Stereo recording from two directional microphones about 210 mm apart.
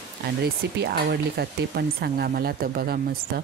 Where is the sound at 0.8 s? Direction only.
50° right (ahead or behind).